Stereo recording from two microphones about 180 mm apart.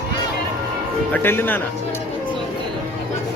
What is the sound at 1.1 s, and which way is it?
Speech, 10° left (ahead or behind).